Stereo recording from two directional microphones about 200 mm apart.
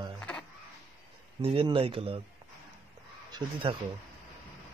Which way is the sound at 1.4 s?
30° right (ahead or behind).